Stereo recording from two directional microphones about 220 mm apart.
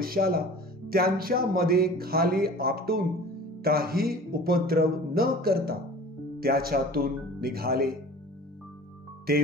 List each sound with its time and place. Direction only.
0.0 s speech: 45° right (ahead or behind)